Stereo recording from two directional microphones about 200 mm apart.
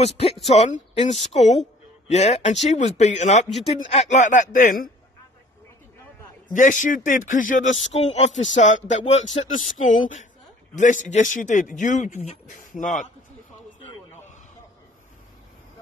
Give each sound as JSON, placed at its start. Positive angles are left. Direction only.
{"t": 0.0, "sound": "speech", "side_deg": 30}
{"t": 6.5, "sound": "speech", "side_deg": 40}